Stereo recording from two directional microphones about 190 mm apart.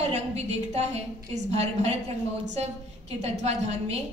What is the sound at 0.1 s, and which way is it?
A woman's voice, 35° right (ahead or behind).